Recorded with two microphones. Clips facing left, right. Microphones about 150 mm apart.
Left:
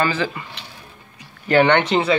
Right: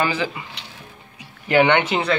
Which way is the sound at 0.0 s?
15° right (ahead or behind).